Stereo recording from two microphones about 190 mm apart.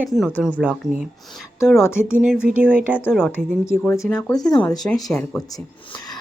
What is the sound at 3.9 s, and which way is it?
Speech, 10° left (ahead or behind).